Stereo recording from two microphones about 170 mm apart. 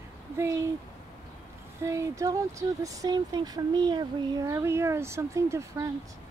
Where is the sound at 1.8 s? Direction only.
20° right (ahead or behind).